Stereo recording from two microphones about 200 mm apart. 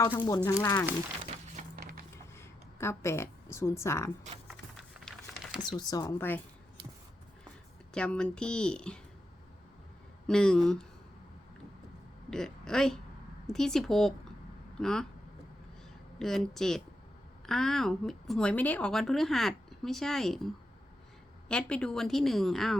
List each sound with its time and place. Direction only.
0.2 s a woman's voice: 20° left (ahead or behind)
1.7 s mechanisms: 50° right (ahead or behind)
2.7 s a woman's voice: 15° left (ahead or behind)
4.4 s a sound: centre (ahead or behind)
5.8 s a woman's voice: 20° left (ahead or behind)
7.9 s speech: 5° left (ahead or behind)
10.2 s speech: 5° left (ahead or behind)
12.3 s speech: 5° left (ahead or behind)
16.1 s speech: centre (ahead or behind)
21.5 s speech: 5° left (ahead or behind)